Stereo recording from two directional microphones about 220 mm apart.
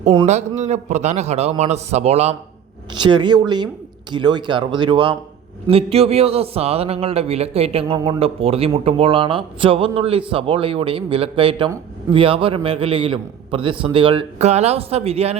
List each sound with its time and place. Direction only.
0.3 s a man's voice: 30° right (ahead or behind)